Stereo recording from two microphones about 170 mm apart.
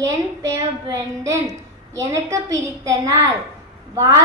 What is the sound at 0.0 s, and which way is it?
A woman's voice, 20° right (ahead or behind).